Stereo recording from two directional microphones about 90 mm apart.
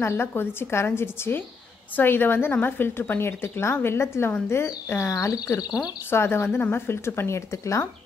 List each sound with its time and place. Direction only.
0.0 s a woman's voice: 25° left (ahead or behind)
6.0 s a woman's voice: 25° left (ahead or behind)